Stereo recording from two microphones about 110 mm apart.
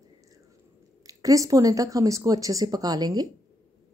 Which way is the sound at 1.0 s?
30° right (ahead or behind).